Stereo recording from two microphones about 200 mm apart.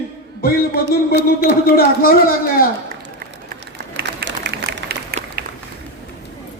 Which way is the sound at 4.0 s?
55° right (ahead or behind).